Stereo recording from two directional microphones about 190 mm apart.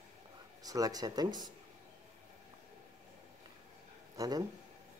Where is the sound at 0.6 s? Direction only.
20° right (ahead or behind).